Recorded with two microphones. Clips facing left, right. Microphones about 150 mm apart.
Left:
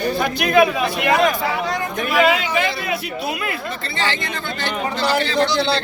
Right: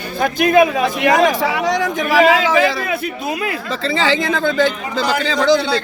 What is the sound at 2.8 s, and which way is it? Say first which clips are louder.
Speech: right 2 dB; 50° right (ahead or behind).